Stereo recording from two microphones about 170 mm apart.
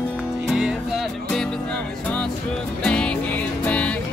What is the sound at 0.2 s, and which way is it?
Music, 5° right (ahead or behind).